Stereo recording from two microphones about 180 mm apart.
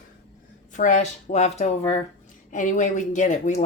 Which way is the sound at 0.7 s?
45° left (ahead or behind).